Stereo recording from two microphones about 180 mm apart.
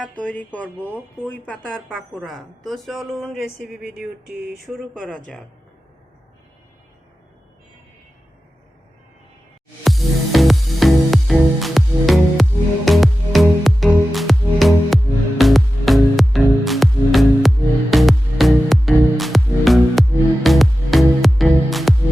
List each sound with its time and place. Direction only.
0.2 s speech: 5° left (ahead or behind)
9.8 s music: centre (ahead or behind)